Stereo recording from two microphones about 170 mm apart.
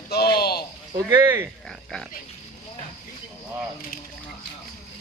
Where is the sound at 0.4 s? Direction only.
65° left (ahead or behind).